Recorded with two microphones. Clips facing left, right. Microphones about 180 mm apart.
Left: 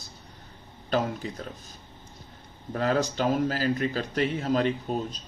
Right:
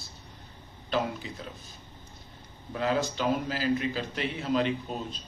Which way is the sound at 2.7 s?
45° left (ahead or behind).